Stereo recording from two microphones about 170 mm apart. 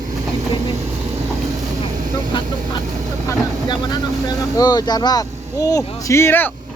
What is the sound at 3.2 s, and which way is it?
Speech, 25° left (ahead or behind).